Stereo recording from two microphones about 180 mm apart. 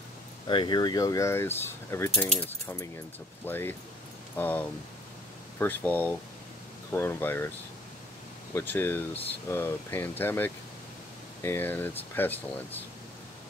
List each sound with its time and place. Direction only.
0.5 s speech: 25° left (ahead or behind)
8.5 s speech: 10° left (ahead or behind)